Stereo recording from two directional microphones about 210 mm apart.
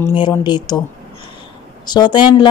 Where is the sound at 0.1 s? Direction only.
20° left (ahead or behind).